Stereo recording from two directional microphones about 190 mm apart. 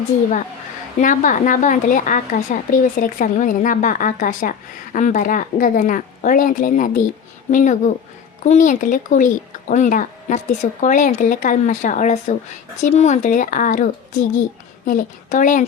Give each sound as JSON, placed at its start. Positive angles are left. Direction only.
{"t": 1.0, "sound": "a woman's voice", "side_deg": 45}